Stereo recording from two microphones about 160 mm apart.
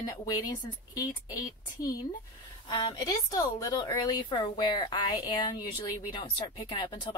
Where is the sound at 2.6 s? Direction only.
25° left (ahead or behind).